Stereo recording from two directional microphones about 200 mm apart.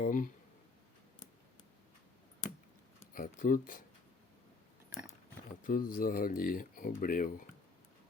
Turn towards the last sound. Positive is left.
turn(degrees=45)  # may be behind; listen again after turning